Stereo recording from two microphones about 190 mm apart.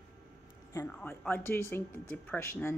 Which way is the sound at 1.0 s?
10° left (ahead or behind).